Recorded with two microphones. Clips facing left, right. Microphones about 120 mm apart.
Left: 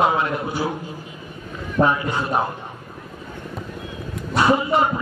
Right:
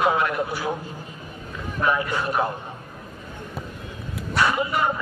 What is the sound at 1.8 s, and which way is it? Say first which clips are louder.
Speech: left 2 dB; 25° left (ahead or behind).